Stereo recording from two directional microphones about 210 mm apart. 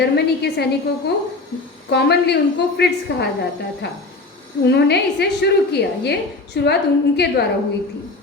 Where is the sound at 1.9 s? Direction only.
50° left (ahead or behind).